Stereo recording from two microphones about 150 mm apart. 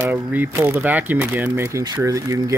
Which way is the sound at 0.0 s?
10° right (ahead or behind).